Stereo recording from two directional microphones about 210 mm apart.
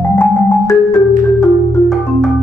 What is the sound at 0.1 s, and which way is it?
Marimba, 10° left (ahead or behind).